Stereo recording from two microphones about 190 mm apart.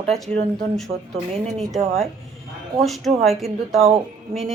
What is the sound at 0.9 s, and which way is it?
Speech, 45° right (ahead or behind).